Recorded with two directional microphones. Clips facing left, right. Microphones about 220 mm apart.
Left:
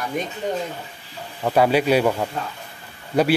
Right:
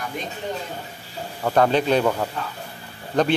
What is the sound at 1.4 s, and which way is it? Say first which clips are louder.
Speech: left 1 dB; 10° left (ahead or behind).